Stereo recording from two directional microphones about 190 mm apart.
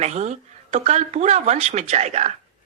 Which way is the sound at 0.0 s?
35° right (ahead or behind).